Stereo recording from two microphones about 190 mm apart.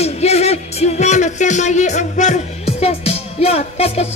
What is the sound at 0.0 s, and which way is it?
Speech, 35° left (ahead or behind).